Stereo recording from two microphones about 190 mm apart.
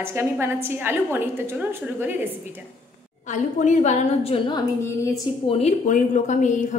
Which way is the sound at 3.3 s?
40° left (ahead or behind).